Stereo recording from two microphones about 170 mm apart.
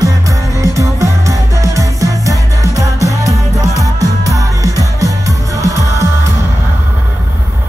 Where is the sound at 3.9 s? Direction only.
20° right (ahead or behind).